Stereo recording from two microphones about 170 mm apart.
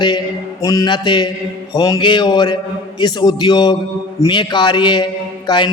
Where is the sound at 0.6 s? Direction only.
20° left (ahead or behind).